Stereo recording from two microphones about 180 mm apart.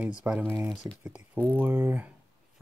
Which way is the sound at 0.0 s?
5° right (ahead or behind).